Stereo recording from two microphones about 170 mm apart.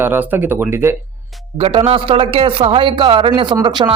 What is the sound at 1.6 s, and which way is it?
Speech, 35° right (ahead or behind).